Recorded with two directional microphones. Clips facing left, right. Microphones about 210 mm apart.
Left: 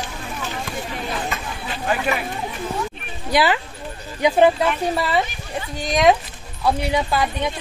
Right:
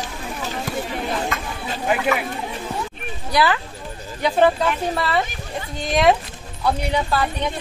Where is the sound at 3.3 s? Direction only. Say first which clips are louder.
Left 1 dB; 20° left (ahead or behind).